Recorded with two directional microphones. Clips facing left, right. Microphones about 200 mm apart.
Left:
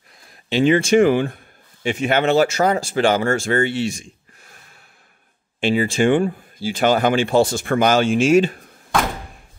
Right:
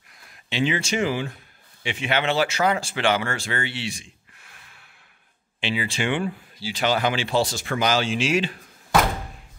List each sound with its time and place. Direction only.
0.5 s a man's voice: 45° left (ahead or behind)